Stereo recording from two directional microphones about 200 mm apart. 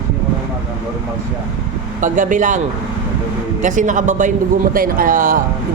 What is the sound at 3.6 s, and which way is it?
Speech, 40° right (ahead or behind).